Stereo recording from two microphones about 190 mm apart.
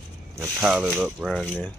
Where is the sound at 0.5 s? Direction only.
5° right (ahead or behind).